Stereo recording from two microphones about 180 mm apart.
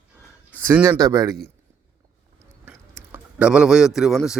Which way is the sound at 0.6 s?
10° right (ahead or behind).